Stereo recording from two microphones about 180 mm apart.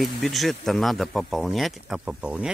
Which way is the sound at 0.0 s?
Centre (ahead or behind).